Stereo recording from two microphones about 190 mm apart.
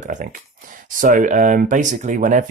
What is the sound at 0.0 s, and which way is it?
Speech, 40° right (ahead or behind).